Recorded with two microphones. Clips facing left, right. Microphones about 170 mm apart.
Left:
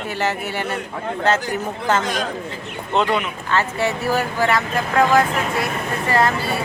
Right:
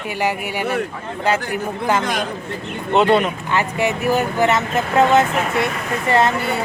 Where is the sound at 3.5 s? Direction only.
15° right (ahead or behind).